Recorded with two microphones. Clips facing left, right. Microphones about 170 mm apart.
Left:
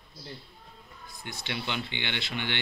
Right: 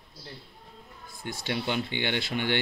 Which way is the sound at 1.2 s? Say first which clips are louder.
Right 5 dB; 45° right (ahead or behind).